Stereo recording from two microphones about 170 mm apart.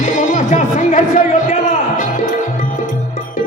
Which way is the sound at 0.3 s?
50° left (ahead or behind).